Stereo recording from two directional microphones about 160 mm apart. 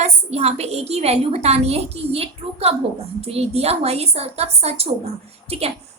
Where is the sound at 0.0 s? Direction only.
40° right (ahead or behind).